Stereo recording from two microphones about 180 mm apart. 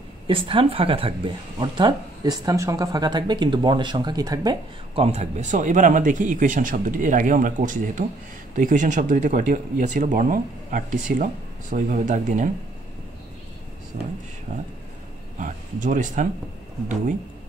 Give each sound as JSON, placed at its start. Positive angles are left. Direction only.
{"t": 0.3, "sound": "speech", "side_deg": -30}
{"t": 5.0, "sound": "speech", "side_deg": -40}
{"t": 13.9, "sound": "speech", "side_deg": -50}